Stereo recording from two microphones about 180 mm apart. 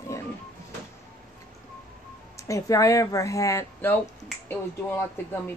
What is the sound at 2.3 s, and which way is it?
Speech, 20° left (ahead or behind).